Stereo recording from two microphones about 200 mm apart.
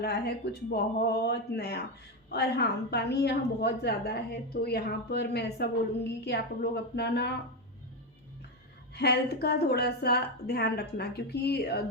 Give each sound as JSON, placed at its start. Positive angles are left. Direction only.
{"t": 0.0, "sound": "a woman's voice", "side_deg": 55}
{"t": 9.0, "sound": "a woman's voice", "side_deg": 55}